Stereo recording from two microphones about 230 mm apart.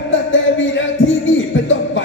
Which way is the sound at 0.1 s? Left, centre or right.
Left.